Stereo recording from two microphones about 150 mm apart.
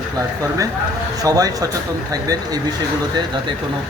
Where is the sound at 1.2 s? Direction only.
25° right (ahead or behind).